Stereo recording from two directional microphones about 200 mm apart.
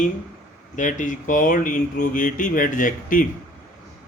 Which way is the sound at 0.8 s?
40° left (ahead or behind).